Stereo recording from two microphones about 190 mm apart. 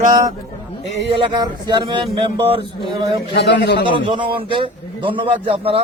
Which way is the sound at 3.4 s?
65° left (ahead or behind).